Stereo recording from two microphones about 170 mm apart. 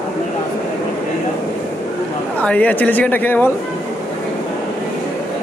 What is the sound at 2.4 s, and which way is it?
Speech, 10° left (ahead or behind).